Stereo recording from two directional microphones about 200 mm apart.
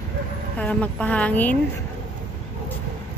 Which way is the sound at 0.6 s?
5° left (ahead or behind).